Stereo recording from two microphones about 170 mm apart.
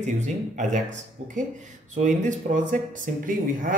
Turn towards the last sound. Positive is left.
turn(degrees=-50)  # may be behind; listen again after turning